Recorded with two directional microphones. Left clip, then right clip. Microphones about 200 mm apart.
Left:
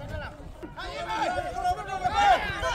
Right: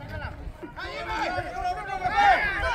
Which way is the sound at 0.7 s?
55° left (ahead or behind).